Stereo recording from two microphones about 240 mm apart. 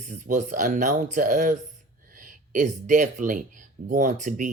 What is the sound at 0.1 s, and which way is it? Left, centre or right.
Speech, right.